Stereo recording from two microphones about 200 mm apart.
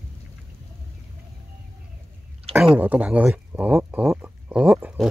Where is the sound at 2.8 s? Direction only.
5° right (ahead or behind).